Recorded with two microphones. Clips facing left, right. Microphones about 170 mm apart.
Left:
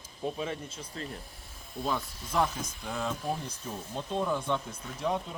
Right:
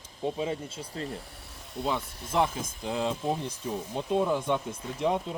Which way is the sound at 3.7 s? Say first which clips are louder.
Right 6 dB; 15° right (ahead or behind).